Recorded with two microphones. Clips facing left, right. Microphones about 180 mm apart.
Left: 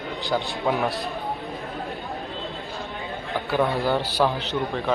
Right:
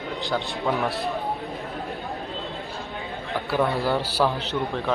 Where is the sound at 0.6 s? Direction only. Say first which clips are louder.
Left 1 dB; 20° left (ahead or behind).